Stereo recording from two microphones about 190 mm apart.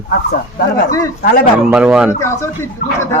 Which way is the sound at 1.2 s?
50° left (ahead or behind).